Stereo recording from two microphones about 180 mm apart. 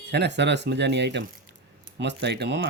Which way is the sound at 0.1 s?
70° right (ahead or behind).